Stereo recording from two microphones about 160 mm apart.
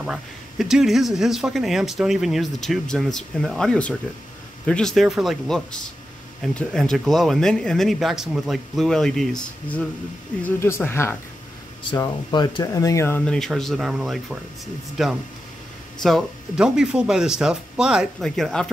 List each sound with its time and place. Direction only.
0.0 s speech: 5° right (ahead or behind); by 11.1 s 15° left (ahead or behind)
11.9 s speech: 25° left (ahead or behind)
13.2 s speech: 5° left (ahead or behind)